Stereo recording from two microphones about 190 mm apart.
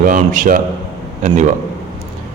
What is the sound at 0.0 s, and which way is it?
Speech, 45° right (ahead or behind).